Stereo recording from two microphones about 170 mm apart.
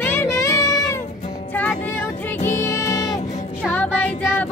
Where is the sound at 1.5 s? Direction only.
10° left (ahead or behind).